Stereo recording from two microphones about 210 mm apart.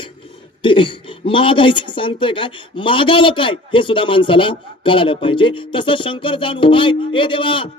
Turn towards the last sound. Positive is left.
turn(degrees=25)  # may be behind; listen again after turning